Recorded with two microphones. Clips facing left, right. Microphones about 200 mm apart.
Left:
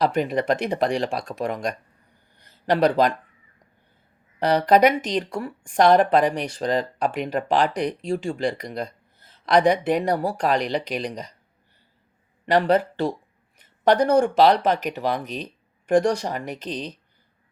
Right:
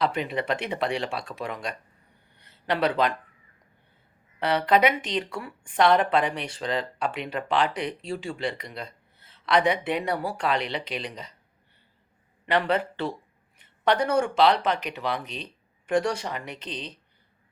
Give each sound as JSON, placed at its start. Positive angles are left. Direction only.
{"t": 0.0, "sound": "speech", "side_deg": 45}
{"t": 4.4, "sound": "a woman's voice", "side_deg": 40}
{"t": 12.5, "sound": "a woman's voice", "side_deg": 40}
{"t": 13.6, "sound": "a sound", "side_deg": 40}
{"t": 14.3, "sound": "a woman's voice", "side_deg": 40}